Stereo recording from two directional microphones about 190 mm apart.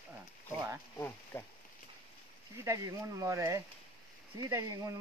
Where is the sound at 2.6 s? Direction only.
15° right (ahead or behind).